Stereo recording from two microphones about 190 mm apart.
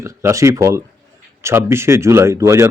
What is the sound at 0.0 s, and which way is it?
Speech, 15° right (ahead or behind).